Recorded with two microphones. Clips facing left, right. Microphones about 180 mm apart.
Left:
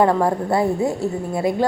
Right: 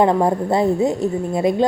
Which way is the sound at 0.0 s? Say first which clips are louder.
Right 1 dB; 20° right (ahead or behind).